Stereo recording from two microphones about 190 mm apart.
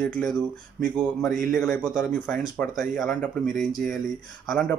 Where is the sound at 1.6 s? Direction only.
5° left (ahead or behind).